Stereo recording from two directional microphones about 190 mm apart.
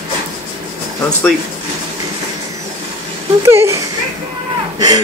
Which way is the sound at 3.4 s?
15° right (ahead or behind).